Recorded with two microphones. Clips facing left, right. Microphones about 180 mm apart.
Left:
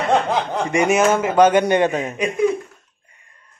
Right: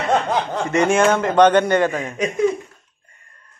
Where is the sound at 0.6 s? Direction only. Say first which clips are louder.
Even; 15° left (ahead or behind).